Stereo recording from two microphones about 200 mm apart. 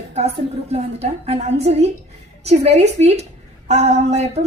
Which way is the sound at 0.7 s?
30° right (ahead or behind).